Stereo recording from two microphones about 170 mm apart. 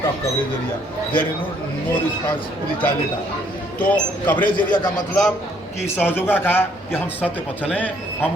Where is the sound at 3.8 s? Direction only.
10° left (ahead or behind).